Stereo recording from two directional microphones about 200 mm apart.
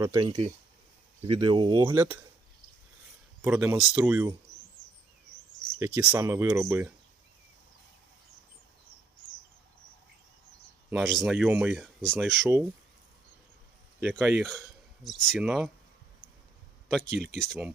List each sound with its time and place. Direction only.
0.0 s speech: 20° right (ahead or behind)
1.9 s speech: 10° right (ahead or behind)
3.4 s speech: 5° right (ahead or behind)
5.8 s speech: 10° right (ahead or behind)
10.8 s speech: centre (ahead or behind)
14.1 s speech: centre (ahead or behind)
17.1 s speech: 60° right (ahead or behind)
17.3 s speech: 5° left (ahead or behind)